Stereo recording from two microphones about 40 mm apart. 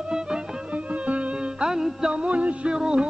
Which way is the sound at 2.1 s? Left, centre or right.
Right.